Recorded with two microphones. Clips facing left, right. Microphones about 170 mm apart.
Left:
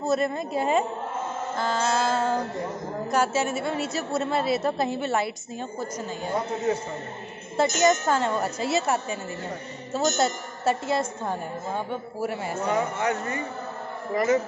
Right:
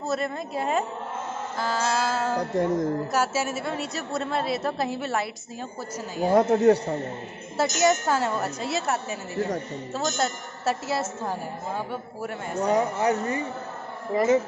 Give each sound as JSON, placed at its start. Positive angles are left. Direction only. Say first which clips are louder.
{"t": 0.0, "sound": "a woman's voice", "louder": "left 3 dB", "side_deg": 0}
{"t": 6.2, "sound": "a woman's voice", "louder": "right 9 dB", "side_deg": -75}
{"t": 7.5, "sound": "a woman's voice", "louder": "left 1 dB", "side_deg": -5}
{"t": 12.6, "sound": "speech", "louder": "right 3 dB", "side_deg": -35}